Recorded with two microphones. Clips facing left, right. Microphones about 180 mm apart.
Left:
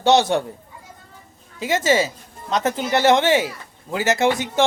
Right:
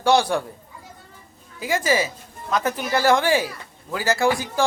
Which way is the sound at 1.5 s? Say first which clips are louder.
Left 3 dB; 25° left (ahead or behind).